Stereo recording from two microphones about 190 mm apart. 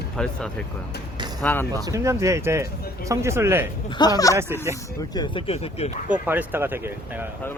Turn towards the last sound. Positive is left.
turn(degrees=-10)  # may be behind; listen again after turning